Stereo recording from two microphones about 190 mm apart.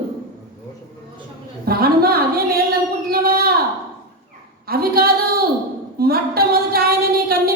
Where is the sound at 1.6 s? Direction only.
55° right (ahead or behind).